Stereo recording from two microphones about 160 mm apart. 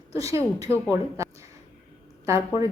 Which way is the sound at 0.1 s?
20° right (ahead or behind).